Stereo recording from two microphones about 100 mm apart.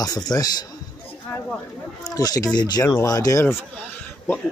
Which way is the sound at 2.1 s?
40° left (ahead or behind).